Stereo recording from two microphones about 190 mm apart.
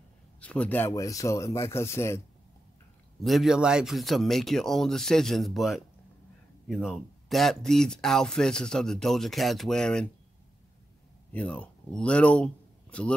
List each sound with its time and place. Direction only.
0.4 s speech: 5° left (ahead or behind)
3.2 s speech: centre (ahead or behind)
11.3 s speech: 5° left (ahead or behind)